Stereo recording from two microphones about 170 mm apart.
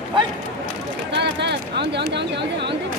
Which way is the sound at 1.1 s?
90° right.